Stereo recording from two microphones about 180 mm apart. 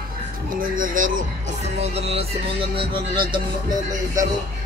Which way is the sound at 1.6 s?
35° right (ahead or behind).